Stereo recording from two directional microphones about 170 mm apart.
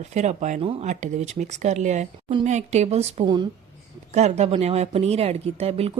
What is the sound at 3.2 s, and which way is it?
Speech, 25° right (ahead or behind).